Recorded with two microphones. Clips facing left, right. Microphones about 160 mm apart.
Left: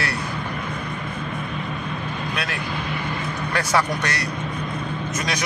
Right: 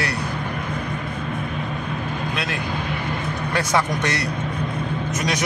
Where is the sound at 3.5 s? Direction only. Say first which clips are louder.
Even; 20° right (ahead or behind).